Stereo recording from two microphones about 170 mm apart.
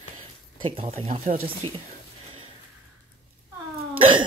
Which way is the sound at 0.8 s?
35° right (ahead or behind).